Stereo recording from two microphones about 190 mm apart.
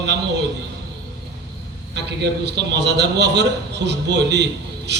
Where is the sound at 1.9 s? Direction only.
65° right (ahead or behind).